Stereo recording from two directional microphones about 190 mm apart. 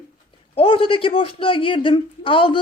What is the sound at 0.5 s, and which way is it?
Speech, 30° left (ahead or behind).